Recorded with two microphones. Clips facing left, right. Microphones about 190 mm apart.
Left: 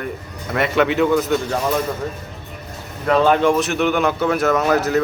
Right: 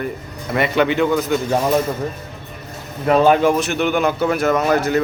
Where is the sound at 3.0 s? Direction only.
15° right (ahead or behind).